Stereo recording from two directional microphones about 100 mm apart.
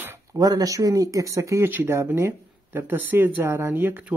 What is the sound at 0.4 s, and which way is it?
Speech, 40° right (ahead or behind).